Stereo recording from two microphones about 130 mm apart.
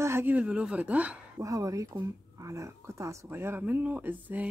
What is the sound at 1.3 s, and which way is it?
Speech, 25° right (ahead or behind).